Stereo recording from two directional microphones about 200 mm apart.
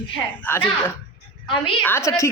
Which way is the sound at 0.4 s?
10° left (ahead or behind).